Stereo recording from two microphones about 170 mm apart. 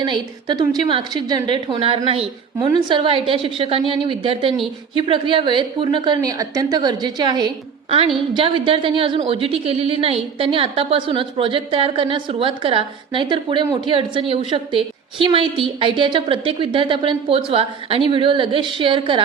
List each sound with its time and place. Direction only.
0.0 s a woman's voice: 25° right (ahead or behind)